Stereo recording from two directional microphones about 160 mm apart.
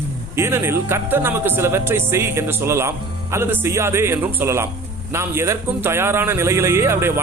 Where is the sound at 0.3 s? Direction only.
15° right (ahead or behind).